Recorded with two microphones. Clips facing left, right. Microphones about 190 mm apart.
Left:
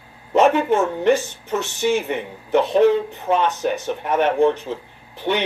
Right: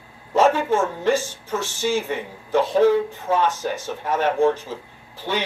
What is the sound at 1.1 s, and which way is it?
Speech, 60° left (ahead or behind).